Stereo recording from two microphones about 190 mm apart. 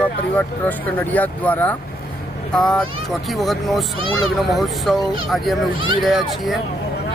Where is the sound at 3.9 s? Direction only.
30° right (ahead or behind).